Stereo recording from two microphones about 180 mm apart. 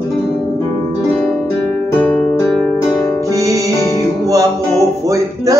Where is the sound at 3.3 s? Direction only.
20° right (ahead or behind).